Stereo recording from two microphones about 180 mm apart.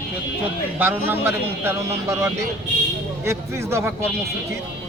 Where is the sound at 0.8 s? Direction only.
10° right (ahead or behind).